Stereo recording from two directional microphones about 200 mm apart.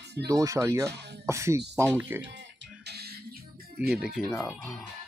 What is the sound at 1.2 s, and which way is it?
Speech, 15° right (ahead or behind).